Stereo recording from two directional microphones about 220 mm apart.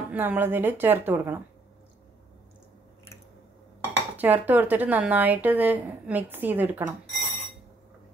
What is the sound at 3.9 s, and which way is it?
Speech, 10° right (ahead or behind).